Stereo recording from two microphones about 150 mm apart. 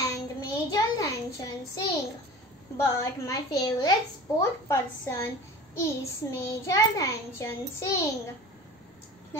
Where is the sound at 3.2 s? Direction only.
25° left (ahead or behind).